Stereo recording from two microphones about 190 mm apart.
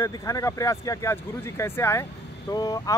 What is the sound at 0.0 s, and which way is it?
Speech, 15° left (ahead or behind).